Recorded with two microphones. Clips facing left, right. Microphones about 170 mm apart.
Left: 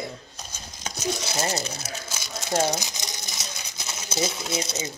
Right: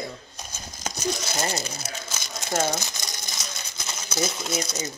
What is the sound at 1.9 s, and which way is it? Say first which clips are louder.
Crumpling: even; 5° left (ahead or behind).